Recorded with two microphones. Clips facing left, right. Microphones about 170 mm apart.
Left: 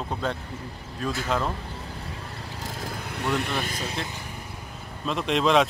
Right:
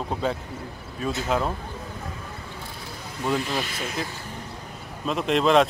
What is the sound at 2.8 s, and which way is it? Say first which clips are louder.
Vehicle: left 1 dB; 55° left (ahead or behind).